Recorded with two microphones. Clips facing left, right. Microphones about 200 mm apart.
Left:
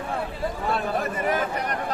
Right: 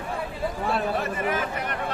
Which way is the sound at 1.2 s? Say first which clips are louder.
Left 2 dB; 40° left (ahead or behind).